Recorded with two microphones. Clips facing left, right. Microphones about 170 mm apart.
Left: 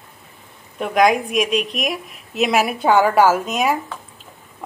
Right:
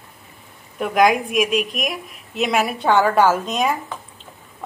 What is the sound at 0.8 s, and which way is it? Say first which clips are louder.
A woman's voice: even; centre (ahead or behind).